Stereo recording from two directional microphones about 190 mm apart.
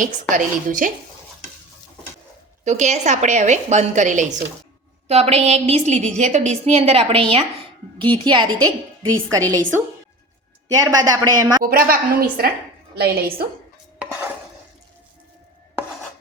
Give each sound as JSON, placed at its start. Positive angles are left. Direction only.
{"t": 0.0, "sound": "a woman's voice", "side_deg": -45}
{"t": 2.6, "sound": "a woman's voice", "side_deg": -35}
{"t": 10.7, "sound": "a woman's voice", "side_deg": -20}
{"t": 11.6, "sound": "a woman's voice", "side_deg": -50}
{"t": 14.0, "sound": "dishes", "side_deg": -10}